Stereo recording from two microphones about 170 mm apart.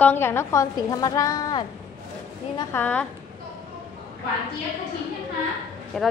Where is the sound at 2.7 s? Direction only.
10° left (ahead or behind).